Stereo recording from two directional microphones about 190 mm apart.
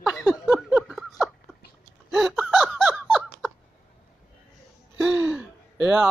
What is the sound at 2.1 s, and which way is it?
Laughter, centre (ahead or behind).